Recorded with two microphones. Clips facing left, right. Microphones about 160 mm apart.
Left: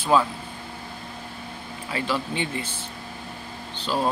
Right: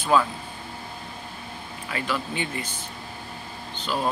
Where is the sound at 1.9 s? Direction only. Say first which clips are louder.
Left 2 dB; 25° left (ahead or behind).